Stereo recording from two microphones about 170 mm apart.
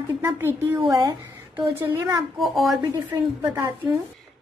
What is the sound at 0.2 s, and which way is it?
Speech, 10° right (ahead or behind).